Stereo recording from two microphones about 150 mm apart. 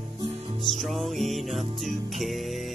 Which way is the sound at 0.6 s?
Centre (ahead or behind).